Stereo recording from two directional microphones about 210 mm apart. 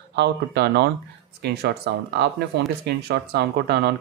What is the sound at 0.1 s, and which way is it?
Speech, 50° right (ahead or behind).